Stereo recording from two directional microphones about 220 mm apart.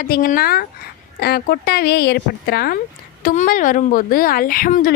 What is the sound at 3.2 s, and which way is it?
A woman's voice, 35° left (ahead or behind).